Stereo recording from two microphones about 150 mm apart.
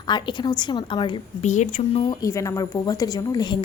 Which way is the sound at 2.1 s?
20° left (ahead or behind).